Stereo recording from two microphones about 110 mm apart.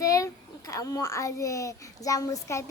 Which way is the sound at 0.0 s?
30° left (ahead or behind).